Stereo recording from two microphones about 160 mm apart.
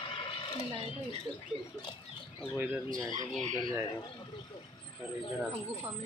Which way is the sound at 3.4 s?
30° left (ahead or behind).